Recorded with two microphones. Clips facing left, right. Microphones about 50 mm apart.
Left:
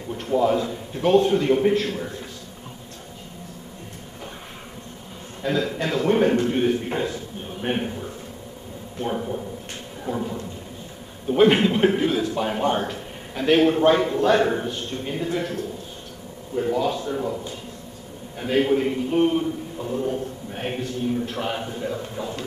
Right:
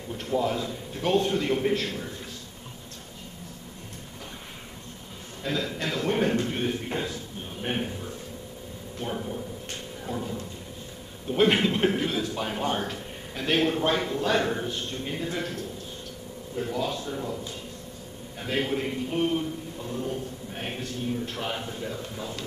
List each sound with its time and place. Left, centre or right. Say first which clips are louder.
0.3 s a man's voice: left 6 dB; centre
5.4 s a man's voice: left 6 dB; centre
9.0 s a man's voice: left 6 dB; centre
11.2 s a man's voice: left 5 dB; centre
16.5 s a man's voice: left 7 dB; centre
18.4 s a man's voice: left 8 dB; centre